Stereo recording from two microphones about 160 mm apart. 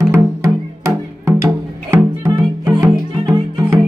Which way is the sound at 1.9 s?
20° right (ahead or behind).